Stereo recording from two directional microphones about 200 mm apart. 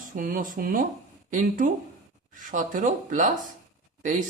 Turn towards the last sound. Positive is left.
turn(degrees=-40)  # may be behind; listen again after turning